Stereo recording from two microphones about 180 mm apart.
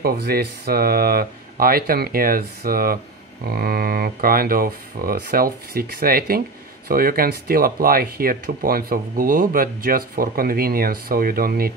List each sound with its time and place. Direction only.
0.0 s speech: 60° right (ahead or behind)